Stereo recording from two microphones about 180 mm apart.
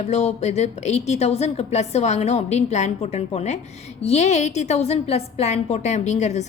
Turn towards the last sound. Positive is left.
turn(degrees=40)  # may be behind; listen again after turning